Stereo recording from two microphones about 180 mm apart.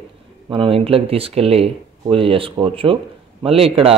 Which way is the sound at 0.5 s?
30° right (ahead or behind).